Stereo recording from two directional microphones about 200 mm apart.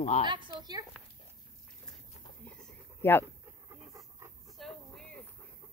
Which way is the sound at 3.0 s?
10° left (ahead or behind).